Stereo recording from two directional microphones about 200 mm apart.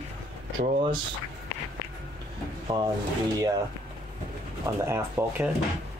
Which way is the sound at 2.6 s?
20° right (ahead or behind).